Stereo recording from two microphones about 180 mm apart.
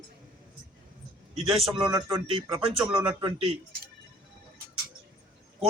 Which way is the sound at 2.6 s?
5° right (ahead or behind).